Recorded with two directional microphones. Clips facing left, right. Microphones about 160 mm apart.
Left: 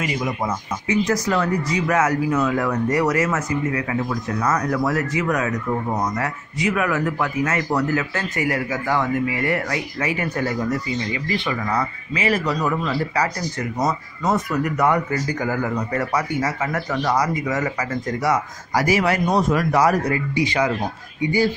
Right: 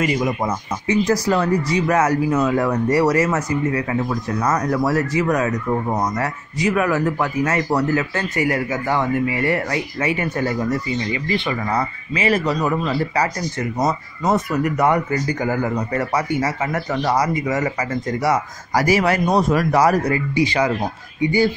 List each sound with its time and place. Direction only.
0.8 s speech: 35° right (ahead or behind)
11.6 s speech: 30° right (ahead or behind)
18.7 s speech: 40° right (ahead or behind)